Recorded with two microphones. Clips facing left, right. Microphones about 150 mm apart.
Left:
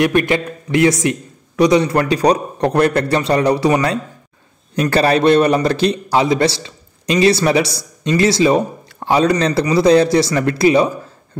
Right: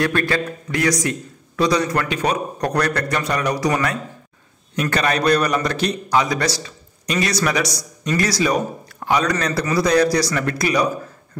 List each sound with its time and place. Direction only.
0.0 s a man's voice: 20° left (ahead or behind)